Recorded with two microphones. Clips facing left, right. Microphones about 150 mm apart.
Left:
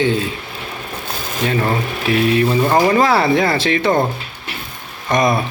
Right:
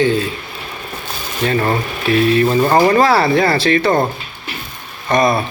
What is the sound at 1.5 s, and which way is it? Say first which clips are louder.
Mantra: right 2 dB; 10° left (ahead or behind).